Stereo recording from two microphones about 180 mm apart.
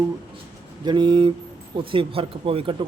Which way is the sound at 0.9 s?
25° right (ahead or behind).